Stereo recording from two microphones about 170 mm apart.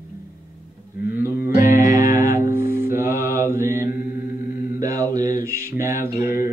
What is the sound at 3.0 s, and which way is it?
Mantra, 15° right (ahead or behind).